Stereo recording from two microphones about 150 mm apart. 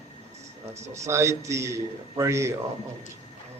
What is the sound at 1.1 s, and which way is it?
A man's voice, 20° right (ahead or behind).